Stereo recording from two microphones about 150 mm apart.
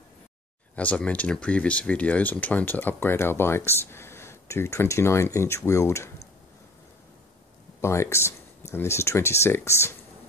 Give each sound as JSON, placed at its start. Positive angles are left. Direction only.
{"t": 0.7, "sound": "speech", "side_deg": 10}
{"t": 7.8, "sound": "speech", "side_deg": 20}